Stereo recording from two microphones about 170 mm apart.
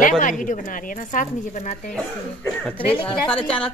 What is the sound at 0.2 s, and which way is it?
Speech, 50° left (ahead or behind).